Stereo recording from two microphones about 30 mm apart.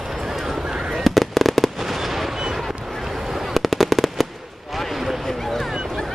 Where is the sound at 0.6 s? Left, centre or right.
Right.